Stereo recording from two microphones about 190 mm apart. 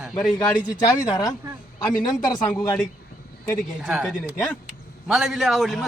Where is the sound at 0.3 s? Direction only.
20° left (ahead or behind).